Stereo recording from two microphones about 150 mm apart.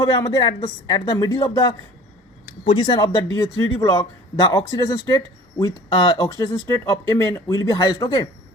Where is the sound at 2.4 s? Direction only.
40° left (ahead or behind).